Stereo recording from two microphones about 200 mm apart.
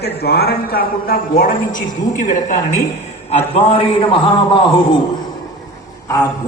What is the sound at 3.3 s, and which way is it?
A man's voice, 25° left (ahead or behind).